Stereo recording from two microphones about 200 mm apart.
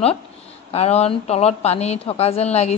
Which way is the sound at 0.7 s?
30° left (ahead or behind).